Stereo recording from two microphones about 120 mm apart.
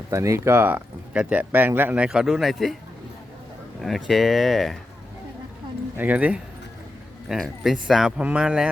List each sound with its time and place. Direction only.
0.1 s speech: 25° right (ahead or behind)
2.0 s speech: 5° right (ahead or behind)
3.8 s speech: centre (ahead or behind)
6.0 s speech: 15° right (ahead or behind)
7.3 s speech: centre (ahead or behind)